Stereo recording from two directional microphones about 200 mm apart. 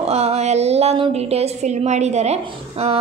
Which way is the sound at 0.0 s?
30° right (ahead or behind).